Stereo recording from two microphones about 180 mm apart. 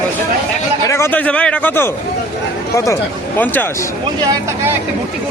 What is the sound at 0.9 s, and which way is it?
A man's voice, 15° left (ahead or behind).